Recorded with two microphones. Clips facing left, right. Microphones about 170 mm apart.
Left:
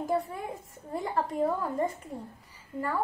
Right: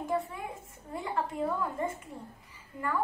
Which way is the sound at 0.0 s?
40° left (ahead or behind).